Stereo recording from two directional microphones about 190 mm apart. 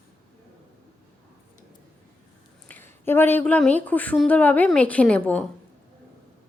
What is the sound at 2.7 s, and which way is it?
Speech, 10° left (ahead or behind).